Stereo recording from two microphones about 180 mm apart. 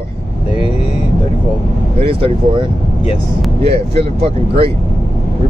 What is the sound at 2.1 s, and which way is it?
Speech, 30° right (ahead or behind).